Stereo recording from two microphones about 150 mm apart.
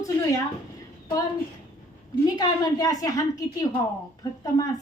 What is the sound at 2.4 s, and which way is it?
A woman's voice, 25° left (ahead or behind).